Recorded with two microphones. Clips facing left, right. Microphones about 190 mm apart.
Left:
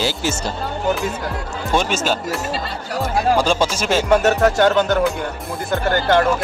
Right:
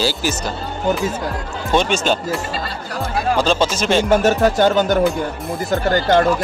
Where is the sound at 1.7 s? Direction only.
5° left (ahead or behind).